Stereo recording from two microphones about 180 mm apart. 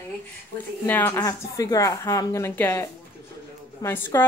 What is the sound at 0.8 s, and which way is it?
Speech, 10° left (ahead or behind).